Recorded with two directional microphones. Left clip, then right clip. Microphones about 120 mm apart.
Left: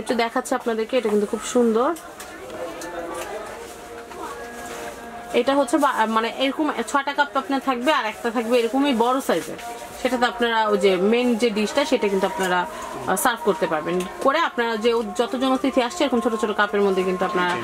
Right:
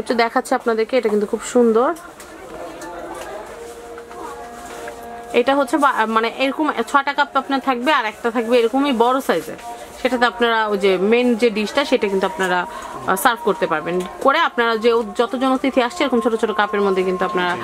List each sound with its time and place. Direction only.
0.1 s speech: 45° right (ahead or behind)
1.7 s speech: 30° right (ahead or behind)
5.3 s speech: 30° right (ahead or behind)